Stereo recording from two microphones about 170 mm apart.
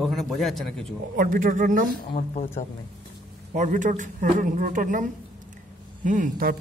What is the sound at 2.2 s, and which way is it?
Speech, 50° left (ahead or behind).